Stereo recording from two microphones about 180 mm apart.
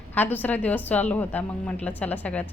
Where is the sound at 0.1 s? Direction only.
10° left (ahead or behind).